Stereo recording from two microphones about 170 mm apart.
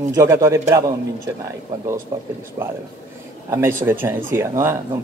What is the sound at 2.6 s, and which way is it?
Speech, 15° right (ahead or behind).